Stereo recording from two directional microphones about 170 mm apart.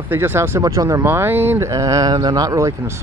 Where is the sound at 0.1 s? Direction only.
15° right (ahead or behind).